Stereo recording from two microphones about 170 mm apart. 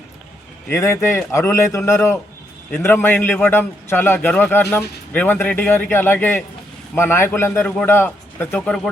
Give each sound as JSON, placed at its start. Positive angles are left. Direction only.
{"t": 0.7, "sound": "a man's voice", "side_deg": 15}